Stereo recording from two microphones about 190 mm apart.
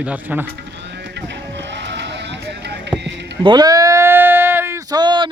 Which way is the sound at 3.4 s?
20° right (ahead or behind).